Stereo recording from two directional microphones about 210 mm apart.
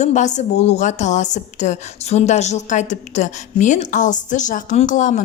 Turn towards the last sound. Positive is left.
turn(degrees=35)  # may be behind; listen again after turning